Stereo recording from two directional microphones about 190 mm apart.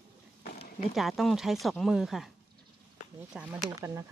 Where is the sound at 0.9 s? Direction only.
Centre (ahead or behind).